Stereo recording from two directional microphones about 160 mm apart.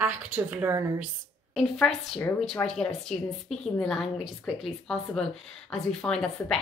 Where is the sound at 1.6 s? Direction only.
5° left (ahead or behind).